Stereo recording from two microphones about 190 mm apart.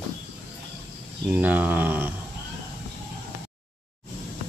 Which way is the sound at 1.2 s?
10° right (ahead or behind).